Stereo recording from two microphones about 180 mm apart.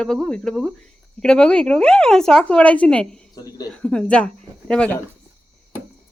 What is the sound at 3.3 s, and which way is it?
Speech, 20° left (ahead or behind).